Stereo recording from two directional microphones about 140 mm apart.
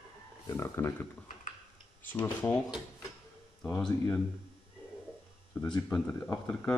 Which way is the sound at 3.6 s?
10° left (ahead or behind).